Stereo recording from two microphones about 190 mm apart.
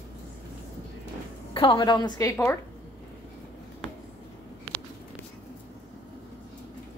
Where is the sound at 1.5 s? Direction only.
25° left (ahead or behind).